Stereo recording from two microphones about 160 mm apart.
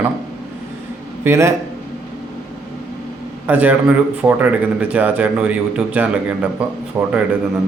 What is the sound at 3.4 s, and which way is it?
A man's voice, 10° right (ahead or behind).